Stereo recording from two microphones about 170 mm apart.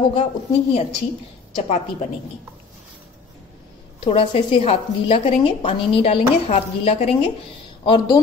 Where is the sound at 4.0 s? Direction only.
35° left (ahead or behind).